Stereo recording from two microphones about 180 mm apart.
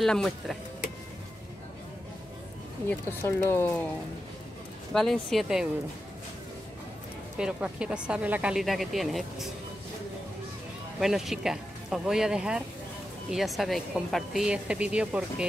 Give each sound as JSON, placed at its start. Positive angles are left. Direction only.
{"t": 0.0, "sound": "a woman's voice", "side_deg": 0}
{"t": 2.9, "sound": "speech", "side_deg": 10}
{"t": 4.9, "sound": "a woman's voice", "side_deg": 0}
{"t": 7.3, "sound": "a woman's voice", "side_deg": -5}
{"t": 11.0, "sound": "a woman's voice", "side_deg": 0}